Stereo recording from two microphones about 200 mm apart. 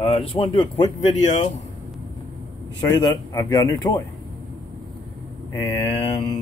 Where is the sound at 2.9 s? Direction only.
20° left (ahead or behind).